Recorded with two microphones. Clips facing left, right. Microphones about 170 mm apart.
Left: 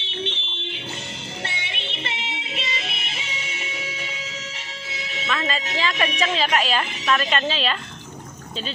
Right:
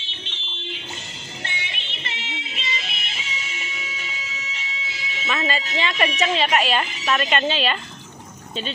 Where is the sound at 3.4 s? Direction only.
65° left (ahead or behind).